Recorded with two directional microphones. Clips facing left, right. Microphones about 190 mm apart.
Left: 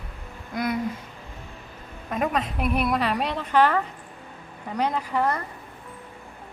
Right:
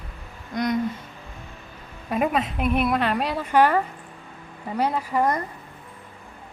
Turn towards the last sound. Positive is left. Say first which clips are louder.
# right 2 dB
turn(degrees=-15)  # may be behind; listen again after turning